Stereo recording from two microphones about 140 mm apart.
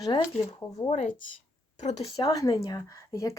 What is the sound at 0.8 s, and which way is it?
Speech, 50° left (ahead or behind).